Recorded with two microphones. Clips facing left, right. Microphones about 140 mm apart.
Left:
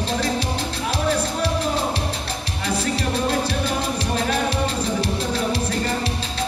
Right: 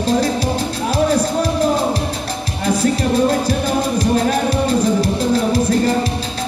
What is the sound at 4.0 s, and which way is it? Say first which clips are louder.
Music: right 7 dB; 40° right (ahead or behind).